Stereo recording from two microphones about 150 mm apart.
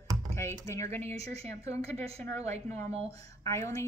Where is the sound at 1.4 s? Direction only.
45° right (ahead or behind).